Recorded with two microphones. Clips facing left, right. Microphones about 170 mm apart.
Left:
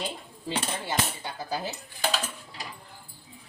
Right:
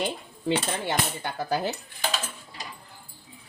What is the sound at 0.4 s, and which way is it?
Cutlery, 65° right (ahead or behind).